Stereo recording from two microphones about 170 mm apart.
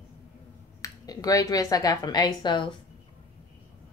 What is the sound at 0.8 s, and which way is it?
Speech, 20° left (ahead or behind).